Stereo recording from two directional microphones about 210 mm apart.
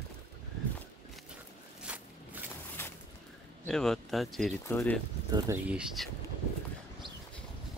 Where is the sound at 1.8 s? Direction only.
5° right (ahead or behind).